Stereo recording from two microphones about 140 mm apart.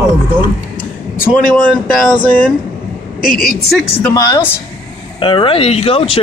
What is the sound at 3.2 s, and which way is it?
Speech, 80° left.